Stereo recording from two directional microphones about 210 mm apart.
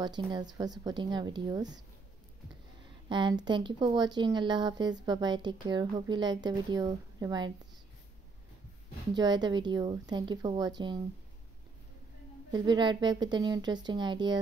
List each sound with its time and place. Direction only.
0.0 s speech: 20° right (ahead or behind)
3.1 s speech: 20° right (ahead or behind)
9.1 s speech: 20° right (ahead or behind)
12.4 s speech: 20° right (ahead or behind)